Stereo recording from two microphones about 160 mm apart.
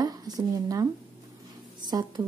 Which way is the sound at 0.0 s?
25° right (ahead or behind).